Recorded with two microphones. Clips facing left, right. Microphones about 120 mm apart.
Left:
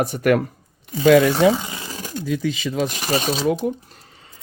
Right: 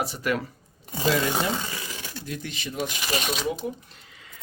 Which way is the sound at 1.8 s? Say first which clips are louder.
Left 7 dB; 40° left (ahead or behind).